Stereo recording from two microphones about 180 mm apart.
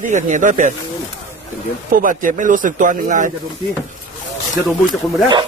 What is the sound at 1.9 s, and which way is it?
Speech, 50° right (ahead or behind).